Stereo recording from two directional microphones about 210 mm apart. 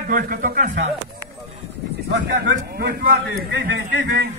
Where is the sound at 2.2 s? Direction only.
50° right (ahead or behind).